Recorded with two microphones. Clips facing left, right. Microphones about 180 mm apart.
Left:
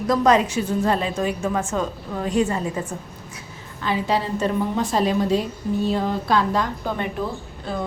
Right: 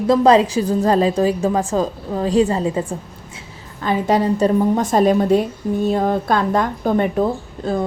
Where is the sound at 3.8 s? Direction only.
45° right (ahead or behind).